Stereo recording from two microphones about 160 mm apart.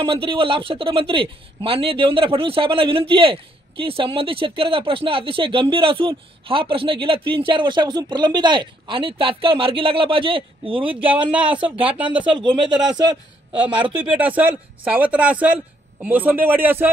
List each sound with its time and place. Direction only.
0.0 s speech: 35° right (ahead or behind)
12.4 s a man's voice: 30° right (ahead or behind)
14.1 s a man's voice: 10° right (ahead or behind)